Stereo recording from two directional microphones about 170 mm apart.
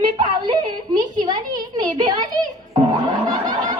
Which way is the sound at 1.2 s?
25° right (ahead or behind).